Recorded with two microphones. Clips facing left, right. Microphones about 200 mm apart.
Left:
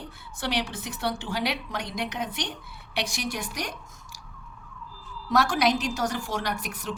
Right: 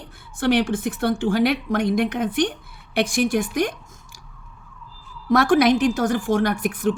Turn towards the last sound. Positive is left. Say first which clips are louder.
# right 10 dB
turn(degrees=-50)  # may be behind; listen again after turning